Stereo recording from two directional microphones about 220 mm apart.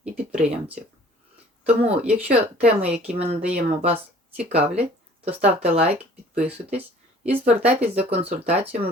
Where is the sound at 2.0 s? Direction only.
5° right (ahead or behind).